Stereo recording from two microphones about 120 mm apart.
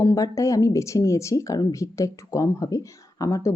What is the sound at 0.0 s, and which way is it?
Speech, 25° left (ahead or behind).